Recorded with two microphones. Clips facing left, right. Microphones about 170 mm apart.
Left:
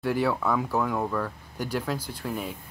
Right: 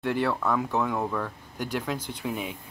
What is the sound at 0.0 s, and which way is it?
Speech, 5° left (ahead or behind).